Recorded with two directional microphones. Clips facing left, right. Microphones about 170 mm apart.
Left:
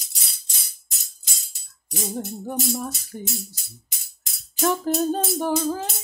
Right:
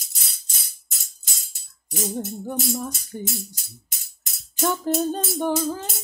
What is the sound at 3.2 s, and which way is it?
Music, 45° right (ahead or behind).